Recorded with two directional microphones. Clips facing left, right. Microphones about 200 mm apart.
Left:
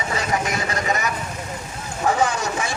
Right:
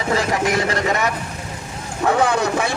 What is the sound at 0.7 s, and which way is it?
Speech, 60° right (ahead or behind).